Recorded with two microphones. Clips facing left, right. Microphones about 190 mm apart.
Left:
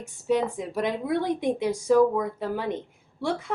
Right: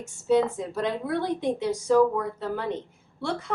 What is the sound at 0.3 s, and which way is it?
Speech, 15° left (ahead or behind).